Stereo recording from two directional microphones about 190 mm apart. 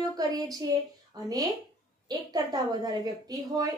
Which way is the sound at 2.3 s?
20° right (ahead or behind).